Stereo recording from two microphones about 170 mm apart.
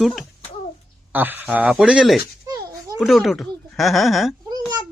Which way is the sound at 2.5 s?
20° right (ahead or behind).